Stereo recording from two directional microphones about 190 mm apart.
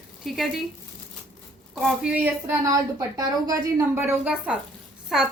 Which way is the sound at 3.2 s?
20° right (ahead or behind).